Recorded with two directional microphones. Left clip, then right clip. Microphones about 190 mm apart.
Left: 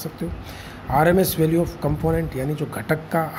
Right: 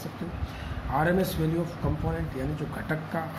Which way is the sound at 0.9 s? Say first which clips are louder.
Left 8 dB; 55° left (ahead or behind).